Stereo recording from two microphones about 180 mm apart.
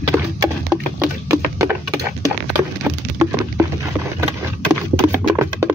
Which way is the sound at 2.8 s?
10° right (ahead or behind).